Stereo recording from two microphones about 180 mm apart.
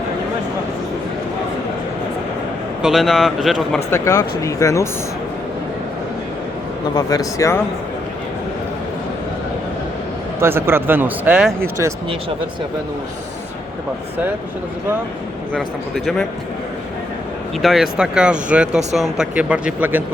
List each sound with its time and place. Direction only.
2.8 s speech: centre (ahead or behind)
3.9 s speech: 15° left (ahead or behind)
6.9 s speech: 20° left (ahead or behind)
10.4 s speech: 15° right (ahead or behind)
17.6 s speech: centre (ahead or behind)